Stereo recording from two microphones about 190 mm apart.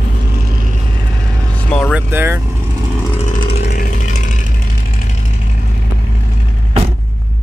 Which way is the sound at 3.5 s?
55° left (ahead or behind).